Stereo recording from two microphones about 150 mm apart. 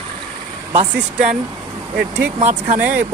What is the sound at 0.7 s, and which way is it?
Speech, 50° right (ahead or behind).